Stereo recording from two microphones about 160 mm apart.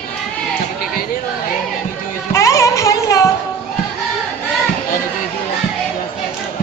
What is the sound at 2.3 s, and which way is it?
Music, 20° left (ahead or behind).